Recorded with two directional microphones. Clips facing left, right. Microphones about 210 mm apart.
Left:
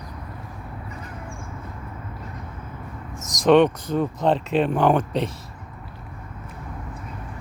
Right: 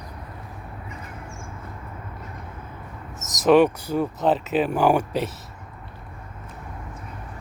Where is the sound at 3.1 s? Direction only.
5° right (ahead or behind).